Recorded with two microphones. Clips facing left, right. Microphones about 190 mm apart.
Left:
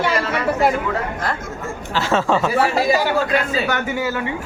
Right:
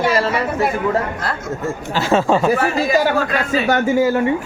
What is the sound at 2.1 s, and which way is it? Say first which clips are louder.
Speech: right 3 dB; 15° right (ahead or behind).